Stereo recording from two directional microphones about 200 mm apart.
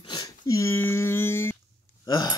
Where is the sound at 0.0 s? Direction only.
20° left (ahead or behind).